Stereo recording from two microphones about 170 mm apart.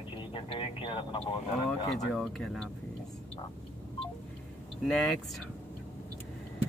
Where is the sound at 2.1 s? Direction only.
5° left (ahead or behind).